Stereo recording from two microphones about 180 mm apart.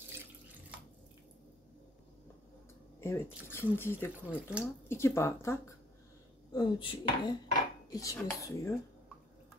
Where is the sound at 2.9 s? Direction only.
15° left (ahead or behind).